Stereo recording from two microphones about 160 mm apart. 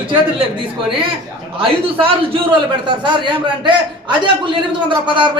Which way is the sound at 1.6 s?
35° right (ahead or behind).